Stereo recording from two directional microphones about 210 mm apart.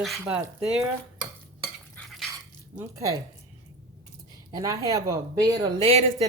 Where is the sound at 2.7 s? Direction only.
15° right (ahead or behind).